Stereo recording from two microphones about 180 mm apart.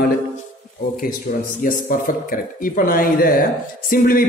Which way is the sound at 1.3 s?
55° left (ahead or behind).